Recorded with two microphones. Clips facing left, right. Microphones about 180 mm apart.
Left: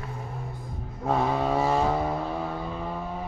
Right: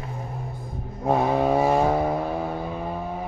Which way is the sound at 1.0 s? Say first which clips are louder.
Right 4 dB; 15° right (ahead or behind).